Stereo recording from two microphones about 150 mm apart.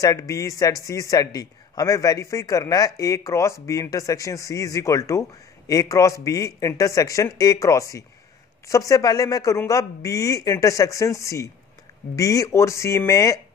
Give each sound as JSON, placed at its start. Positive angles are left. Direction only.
{"t": 0.0, "sound": "speech", "side_deg": 20}